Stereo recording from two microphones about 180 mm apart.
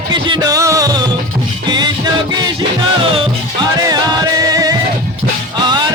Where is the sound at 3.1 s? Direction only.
25° right (ahead or behind).